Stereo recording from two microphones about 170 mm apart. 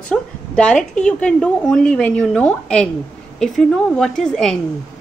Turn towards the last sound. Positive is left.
turn(degrees=0)  # may be behind; listen again after turning